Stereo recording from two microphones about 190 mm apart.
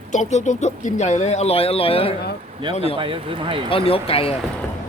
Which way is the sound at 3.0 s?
30° right (ahead or behind).